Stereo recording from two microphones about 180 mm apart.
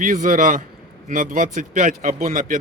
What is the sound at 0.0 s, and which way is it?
Speech, 50° right (ahead or behind).